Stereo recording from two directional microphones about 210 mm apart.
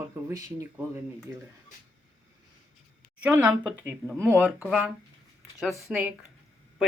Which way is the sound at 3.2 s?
5° right (ahead or behind).